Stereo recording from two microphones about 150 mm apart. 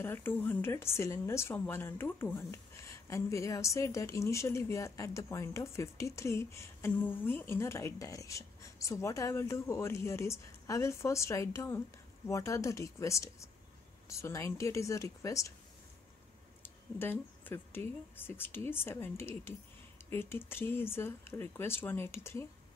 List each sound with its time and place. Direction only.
0.0 s speech: 15° left (ahead or behind)
16.6 s speech: 15° left (ahead or behind)